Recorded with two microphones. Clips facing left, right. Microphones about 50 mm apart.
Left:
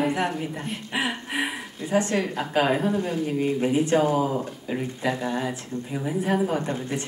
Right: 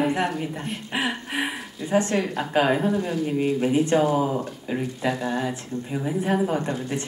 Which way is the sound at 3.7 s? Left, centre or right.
Right.